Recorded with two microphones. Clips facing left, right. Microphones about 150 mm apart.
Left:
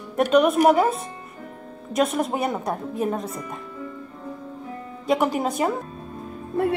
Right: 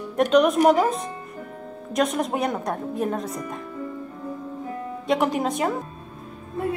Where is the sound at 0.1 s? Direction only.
5° left (ahead or behind).